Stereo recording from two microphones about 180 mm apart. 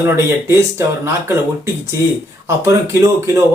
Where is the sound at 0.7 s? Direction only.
15° right (ahead or behind).